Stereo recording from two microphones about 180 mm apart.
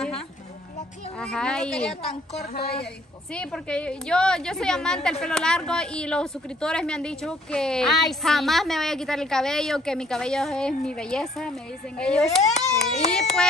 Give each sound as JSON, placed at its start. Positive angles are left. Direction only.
{"t": 1.2, "sound": "a woman's voice", "side_deg": 5}
{"t": 2.5, "sound": "a woman's voice", "side_deg": 60}
{"t": 3.3, "sound": "a woman's voice", "side_deg": 5}